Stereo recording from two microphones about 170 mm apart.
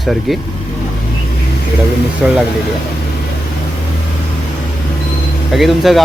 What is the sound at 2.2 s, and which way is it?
Speech, 5° right (ahead or behind).